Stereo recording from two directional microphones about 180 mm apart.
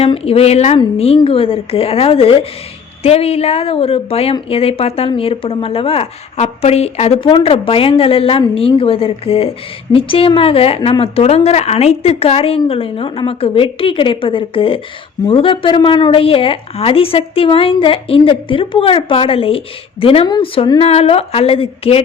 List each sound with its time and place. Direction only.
0.0 s a woman's voice: 35° left (ahead or behind)